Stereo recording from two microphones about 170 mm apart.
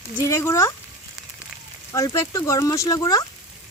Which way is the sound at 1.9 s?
20° left (ahead or behind).